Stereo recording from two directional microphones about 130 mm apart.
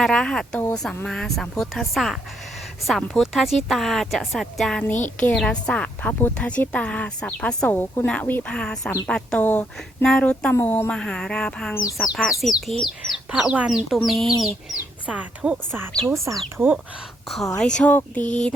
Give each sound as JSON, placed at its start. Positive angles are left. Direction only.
{"t": 0.0, "sound": "a woman's voice", "side_deg": 5}
{"t": 14.8, "sound": "speech", "side_deg": -10}
{"t": 16.0, "sound": "speech", "side_deg": -25}
{"t": 17.6, "sound": "a woman's voice", "side_deg": 5}
{"t": 18.2, "sound": "a sound", "side_deg": 70}